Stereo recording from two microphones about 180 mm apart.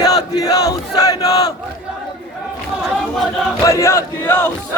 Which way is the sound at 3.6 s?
15° left (ahead or behind).